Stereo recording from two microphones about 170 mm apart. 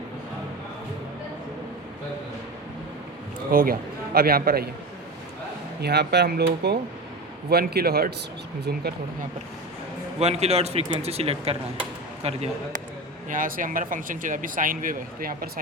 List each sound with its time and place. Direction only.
3.5 s a man's voice: 60° right (ahead or behind)
5.8 s a man's voice: 75° right (ahead or behind)
10.2 s a man's voice: 40° right (ahead or behind)
13.3 s speech: 50° right (ahead or behind)